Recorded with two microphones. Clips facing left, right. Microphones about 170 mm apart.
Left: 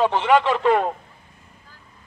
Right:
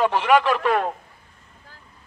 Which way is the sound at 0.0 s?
20° left (ahead or behind).